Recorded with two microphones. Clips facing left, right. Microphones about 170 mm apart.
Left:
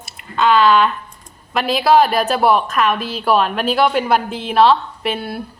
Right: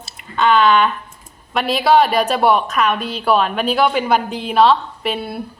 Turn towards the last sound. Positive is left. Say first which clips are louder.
# even
turn(degrees=0)  # may be behind; listen again after turning